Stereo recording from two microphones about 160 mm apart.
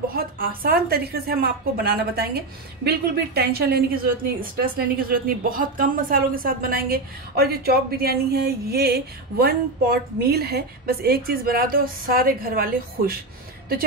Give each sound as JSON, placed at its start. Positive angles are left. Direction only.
{"t": 0.1, "sound": "a woman's voice", "side_deg": -65}